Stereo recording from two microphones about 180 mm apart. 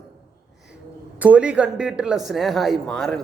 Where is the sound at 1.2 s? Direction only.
5° right (ahead or behind).